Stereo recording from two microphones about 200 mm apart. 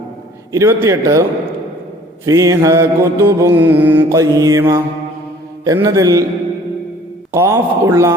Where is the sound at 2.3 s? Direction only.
15° right (ahead or behind).